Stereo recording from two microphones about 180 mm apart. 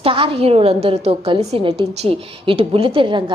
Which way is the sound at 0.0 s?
30° right (ahead or behind).